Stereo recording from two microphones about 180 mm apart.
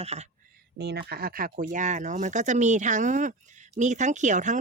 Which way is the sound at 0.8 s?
65° right (ahead or behind).